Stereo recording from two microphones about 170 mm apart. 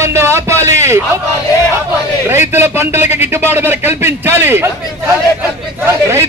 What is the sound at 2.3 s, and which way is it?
A man's voice, 15° right (ahead or behind).